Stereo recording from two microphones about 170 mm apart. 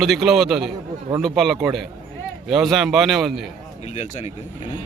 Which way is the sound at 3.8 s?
45° left (ahead or behind).